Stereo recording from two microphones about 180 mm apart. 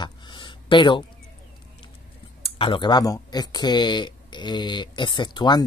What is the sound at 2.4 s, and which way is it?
Speech, 30° left (ahead or behind).